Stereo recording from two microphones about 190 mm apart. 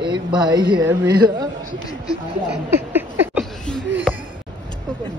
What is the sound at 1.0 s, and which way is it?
Speech, 60° right (ahead or behind).